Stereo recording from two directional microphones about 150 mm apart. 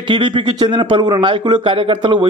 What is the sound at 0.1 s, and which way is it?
A man's voice, 35° right (ahead or behind).